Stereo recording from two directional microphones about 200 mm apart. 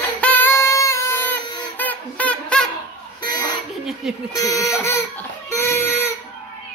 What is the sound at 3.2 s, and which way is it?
Music, 20° left (ahead or behind).